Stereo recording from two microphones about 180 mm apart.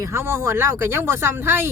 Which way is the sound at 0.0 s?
15° right (ahead or behind).